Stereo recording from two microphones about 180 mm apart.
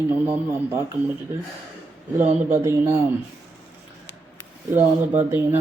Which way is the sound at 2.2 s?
40° right (ahead or behind).